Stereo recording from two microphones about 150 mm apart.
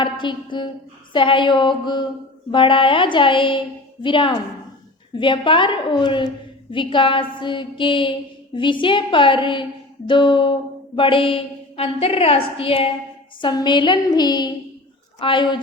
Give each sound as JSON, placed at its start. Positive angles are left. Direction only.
{"t": 0.0, "sound": "a woman's voice", "side_deg": 30}